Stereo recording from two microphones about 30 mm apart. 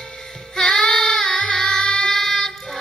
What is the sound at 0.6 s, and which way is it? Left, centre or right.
Child singing, left.